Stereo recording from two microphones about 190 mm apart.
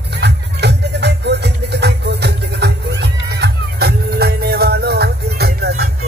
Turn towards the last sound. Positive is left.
turn(degrees=-55)  # may be behind; listen again after turning